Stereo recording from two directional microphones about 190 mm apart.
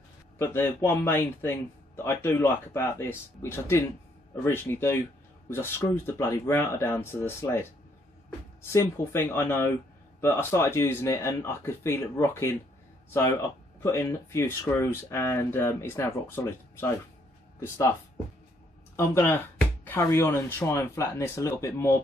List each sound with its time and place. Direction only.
0.4 s speech: 10° left (ahead or behind)
8.6 s speech: 15° left (ahead or behind)
13.8 s speech: 15° left (ahead or behind)
18.9 s speech: 15° left (ahead or behind)